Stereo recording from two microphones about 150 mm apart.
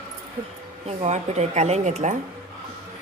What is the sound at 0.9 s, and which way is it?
Speech, 45° right (ahead or behind).